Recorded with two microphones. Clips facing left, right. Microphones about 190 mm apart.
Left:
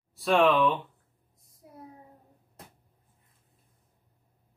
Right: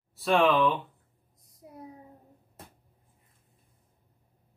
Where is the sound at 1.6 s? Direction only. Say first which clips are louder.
Right 3 dB; 20° right (ahead or behind).